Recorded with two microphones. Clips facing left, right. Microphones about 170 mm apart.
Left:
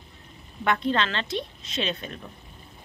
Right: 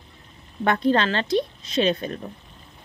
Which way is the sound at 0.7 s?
40° right (ahead or behind).